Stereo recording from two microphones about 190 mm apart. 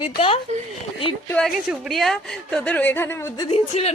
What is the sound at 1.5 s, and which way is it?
A woman's voice, 5° right (ahead or behind).